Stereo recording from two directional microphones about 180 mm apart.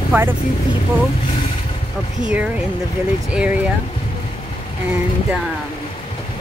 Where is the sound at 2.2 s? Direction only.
5° right (ahead or behind).